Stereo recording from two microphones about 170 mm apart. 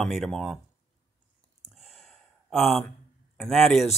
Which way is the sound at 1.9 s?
Centre (ahead or behind).